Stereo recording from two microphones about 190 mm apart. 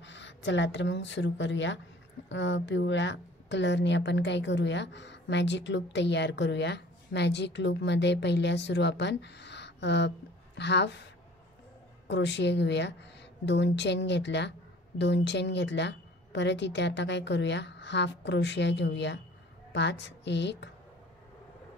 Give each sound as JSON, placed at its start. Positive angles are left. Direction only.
{"t": 0.0, "sound": "a woman's voice", "side_deg": 70}
{"t": 12.1, "sound": "a woman's voice", "side_deg": 65}